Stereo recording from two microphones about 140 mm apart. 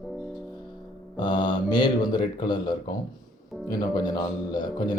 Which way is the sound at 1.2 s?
30° left (ahead or behind).